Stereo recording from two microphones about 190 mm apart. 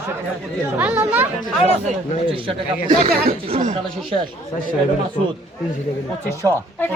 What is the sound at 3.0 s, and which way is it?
Speech, 40° right (ahead or behind).